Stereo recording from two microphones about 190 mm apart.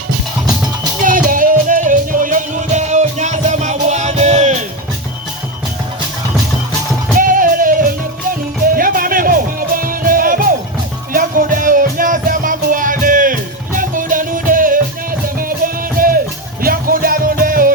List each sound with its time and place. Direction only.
1.0 s music: 45° right (ahead or behind)
7.2 s music: 45° right (ahead or behind)